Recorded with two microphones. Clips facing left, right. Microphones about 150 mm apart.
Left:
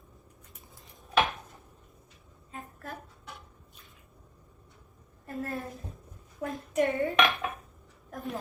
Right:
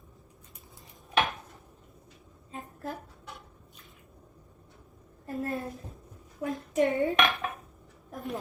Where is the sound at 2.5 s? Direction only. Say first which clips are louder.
Right 4 dB; 20° right (ahead or behind).